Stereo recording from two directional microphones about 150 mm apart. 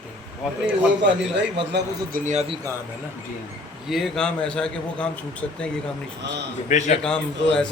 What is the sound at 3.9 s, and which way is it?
A man's voice, centre (ahead or behind).